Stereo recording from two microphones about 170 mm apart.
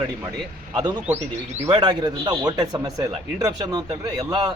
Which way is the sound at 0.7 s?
20° right (ahead or behind).